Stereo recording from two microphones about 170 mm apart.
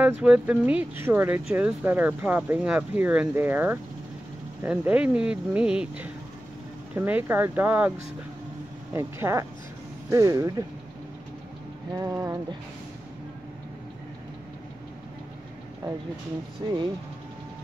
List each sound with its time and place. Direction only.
0.0 s speech: 10° right (ahead or behind)
8.9 s speech: 15° right (ahead or behind)
11.9 s speech: 20° right (ahead or behind)
16.6 s speech: 25° right (ahead or behind)